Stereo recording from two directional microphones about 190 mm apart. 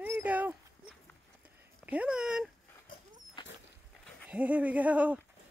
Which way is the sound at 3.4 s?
25° left (ahead or behind).